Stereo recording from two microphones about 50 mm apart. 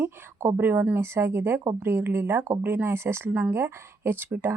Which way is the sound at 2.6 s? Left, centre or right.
Right.